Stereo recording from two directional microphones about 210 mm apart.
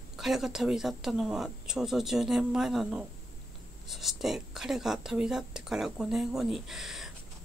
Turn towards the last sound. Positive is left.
turn(degrees=0)  # may be behind; listen again after turning